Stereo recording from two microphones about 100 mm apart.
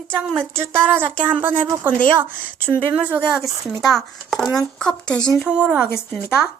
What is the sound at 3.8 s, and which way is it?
Speech, centre (ahead or behind).